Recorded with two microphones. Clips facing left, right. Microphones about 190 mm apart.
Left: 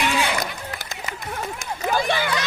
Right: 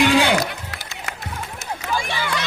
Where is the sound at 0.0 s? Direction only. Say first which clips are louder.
Right 7 dB; 85° right.